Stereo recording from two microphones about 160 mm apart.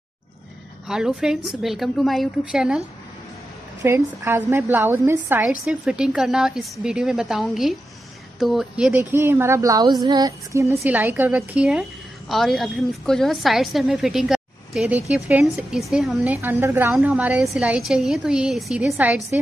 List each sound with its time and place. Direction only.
0.8 s a woman's voice: 5° right (ahead or behind)
3.8 s a woman's voice: 15° right (ahead or behind)
9.1 s a woman's voice: 15° right (ahead or behind)
16.3 s a woman's voice: 15° right (ahead or behind)